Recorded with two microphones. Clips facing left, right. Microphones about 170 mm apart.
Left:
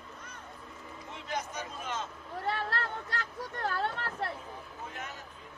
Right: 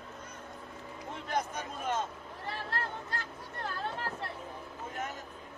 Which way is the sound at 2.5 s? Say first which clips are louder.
Left 2 dB; 75° left (ahead or behind).